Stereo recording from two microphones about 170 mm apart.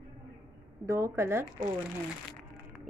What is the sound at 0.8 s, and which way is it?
Speech, 20° right (ahead or behind).